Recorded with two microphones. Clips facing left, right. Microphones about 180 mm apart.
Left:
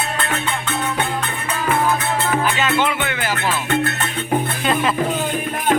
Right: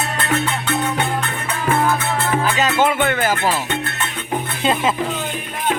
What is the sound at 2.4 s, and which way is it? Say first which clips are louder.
Music: right 2 dB; 40° right (ahead or behind).